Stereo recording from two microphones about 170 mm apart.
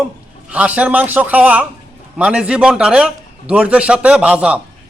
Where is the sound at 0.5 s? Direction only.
10° right (ahead or behind).